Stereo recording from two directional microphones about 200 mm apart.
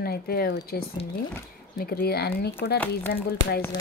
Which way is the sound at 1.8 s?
50° left (ahead or behind).